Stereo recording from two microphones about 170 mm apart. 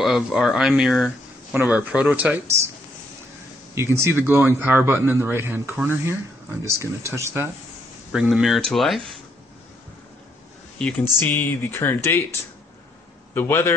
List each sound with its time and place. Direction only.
0.0 s speech: centre (ahead or behind)
3.7 s a man's voice: 15° right (ahead or behind)
8.1 s speech: 5° right (ahead or behind)
10.8 s speech: 10° left (ahead or behind)
13.3 s speech: 15° left (ahead or behind)